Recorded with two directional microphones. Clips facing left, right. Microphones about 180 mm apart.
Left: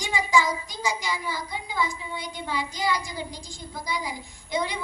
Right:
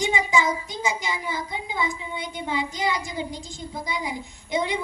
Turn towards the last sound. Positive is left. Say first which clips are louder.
# right 3 dB
turn(degrees=-20)  # may be behind; listen again after turning